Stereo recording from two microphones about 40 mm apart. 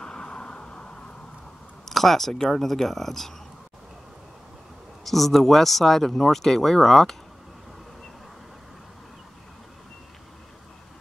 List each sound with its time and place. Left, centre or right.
0.0 s vehicle: left
1.9 s speech: centre
5.0 s speech: centre